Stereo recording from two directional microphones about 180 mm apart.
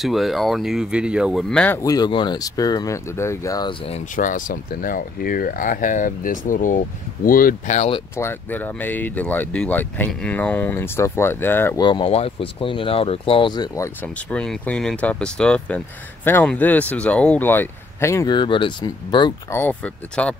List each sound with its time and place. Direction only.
0.0 s speech: centre (ahead or behind)
1.8 s speech: 20° left (ahead or behind)
4.2 s speech: 45° left (ahead or behind)
8.2 s speech: 10° left (ahead or behind)
11.8 s speech: 25° left (ahead or behind)
14.0 s speech: 5° left (ahead or behind); by 19.3 s 25° left (ahead or behind)
19.5 s speech: 10° left (ahead or behind)